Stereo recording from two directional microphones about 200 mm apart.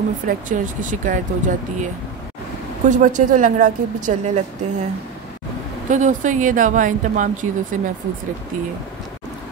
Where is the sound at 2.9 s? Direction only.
40° right (ahead or behind).